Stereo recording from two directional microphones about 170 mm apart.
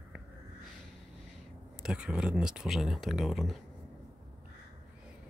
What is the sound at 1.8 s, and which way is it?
Speech, 5° right (ahead or behind).